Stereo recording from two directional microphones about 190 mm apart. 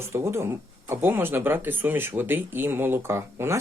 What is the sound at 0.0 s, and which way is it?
Speech, 15° right (ahead or behind).